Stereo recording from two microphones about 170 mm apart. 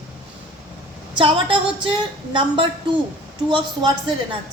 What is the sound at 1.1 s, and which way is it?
A woman's voice, 30° right (ahead or behind).